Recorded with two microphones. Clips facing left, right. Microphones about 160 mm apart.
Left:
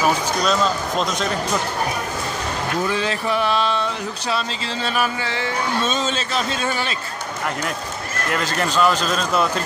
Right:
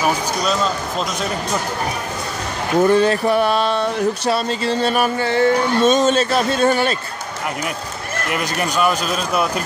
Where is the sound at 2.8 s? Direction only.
50° right (ahead or behind).